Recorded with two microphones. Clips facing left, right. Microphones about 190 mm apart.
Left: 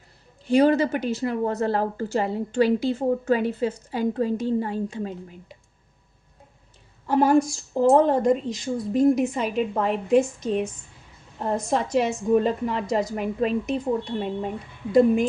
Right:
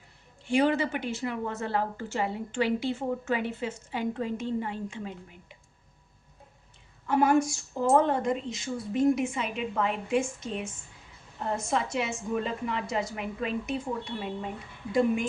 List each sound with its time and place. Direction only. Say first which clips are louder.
0.4 s a woman's voice: left 6 dB; 40° left (ahead or behind)
7.1 s a woman's voice: left 4 dB; 35° left (ahead or behind)